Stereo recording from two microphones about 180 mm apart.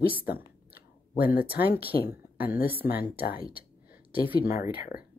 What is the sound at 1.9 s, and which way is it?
Speech, 55° left (ahead or behind).